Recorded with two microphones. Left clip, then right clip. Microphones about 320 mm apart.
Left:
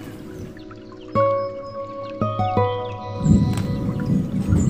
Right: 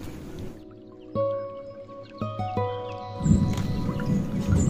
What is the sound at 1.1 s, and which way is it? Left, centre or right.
Music, centre.